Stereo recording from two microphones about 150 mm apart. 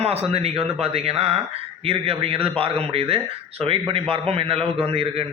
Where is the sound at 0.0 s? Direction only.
40° right (ahead or behind).